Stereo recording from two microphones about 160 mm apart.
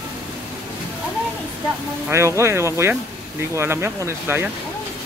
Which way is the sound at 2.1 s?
15° right (ahead or behind).